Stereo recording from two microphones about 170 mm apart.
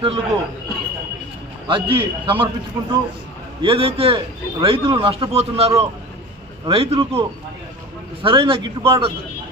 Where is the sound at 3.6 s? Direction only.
30° right (ahead or behind).